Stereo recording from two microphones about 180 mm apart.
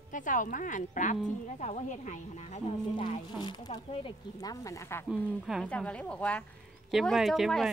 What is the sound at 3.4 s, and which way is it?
Speech, 25° left (ahead or behind).